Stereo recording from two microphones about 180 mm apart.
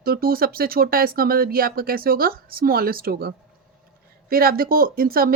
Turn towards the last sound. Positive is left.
turn(degrees=-55)  # may be behind; listen again after turning